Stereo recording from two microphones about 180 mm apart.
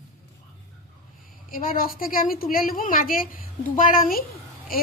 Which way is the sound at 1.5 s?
50° left (ahead or behind).